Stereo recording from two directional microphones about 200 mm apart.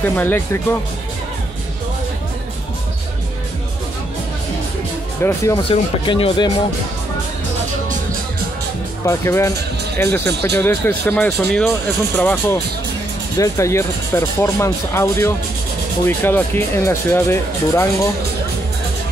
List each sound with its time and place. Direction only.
0.0 s speech: 10° left (ahead or behind)
5.2 s speech: 15° left (ahead or behind)
5.7 s speech: 25° left (ahead or behind)
9.0 s speech: 15° left (ahead or behind)